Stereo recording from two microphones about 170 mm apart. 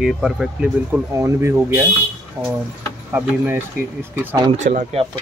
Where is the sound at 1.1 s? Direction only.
15° right (ahead or behind).